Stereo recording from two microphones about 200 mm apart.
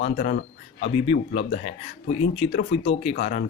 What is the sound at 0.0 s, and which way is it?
Speech, 45° left (ahead or behind).